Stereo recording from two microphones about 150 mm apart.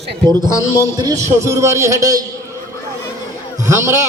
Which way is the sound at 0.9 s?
25° right (ahead or behind).